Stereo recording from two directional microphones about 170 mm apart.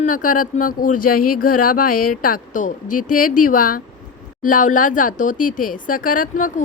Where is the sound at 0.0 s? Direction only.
50° left (ahead or behind).